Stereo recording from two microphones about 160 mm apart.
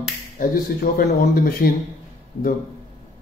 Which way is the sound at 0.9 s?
65° left (ahead or behind).